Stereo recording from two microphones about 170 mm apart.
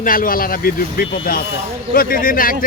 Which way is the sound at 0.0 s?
55° left (ahead or behind).